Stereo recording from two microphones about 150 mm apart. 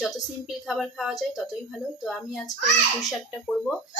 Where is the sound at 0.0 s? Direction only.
5° right (ahead or behind).